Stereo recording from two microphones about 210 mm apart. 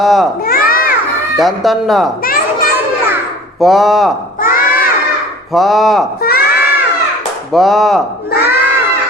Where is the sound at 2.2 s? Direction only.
45° left (ahead or behind).